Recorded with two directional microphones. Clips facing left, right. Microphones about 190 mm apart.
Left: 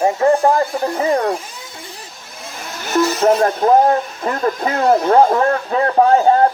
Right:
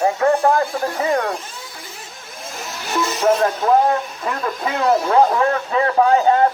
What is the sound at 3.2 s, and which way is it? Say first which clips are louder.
Speech: left 1 dB; 35° left (ahead or behind).